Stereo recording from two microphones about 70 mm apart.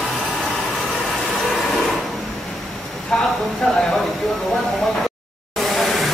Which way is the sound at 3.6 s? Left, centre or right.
Centre.